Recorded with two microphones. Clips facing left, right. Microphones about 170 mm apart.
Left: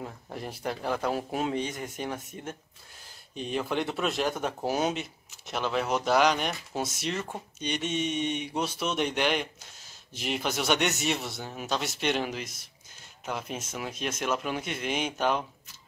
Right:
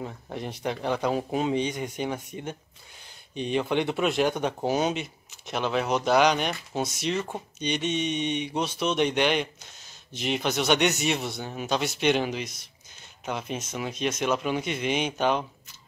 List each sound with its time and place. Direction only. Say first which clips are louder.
0.0 s speech: right 3 dB; centre (ahead or behind)